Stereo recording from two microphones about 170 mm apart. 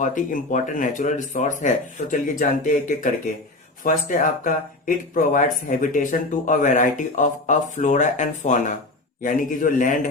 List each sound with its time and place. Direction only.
0.0 s speech: 50° left (ahead or behind)